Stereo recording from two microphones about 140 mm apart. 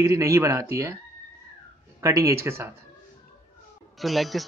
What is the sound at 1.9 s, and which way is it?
Speech, 20° right (ahead or behind).